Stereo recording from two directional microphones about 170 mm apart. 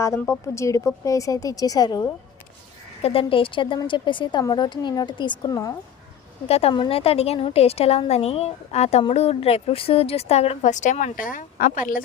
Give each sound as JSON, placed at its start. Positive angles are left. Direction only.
{"t": 0.0, "sound": "a woman's voice", "side_deg": 15}
{"t": 3.0, "sound": "a woman's voice", "side_deg": 35}
{"t": 6.5, "sound": "a woman's voice", "side_deg": 35}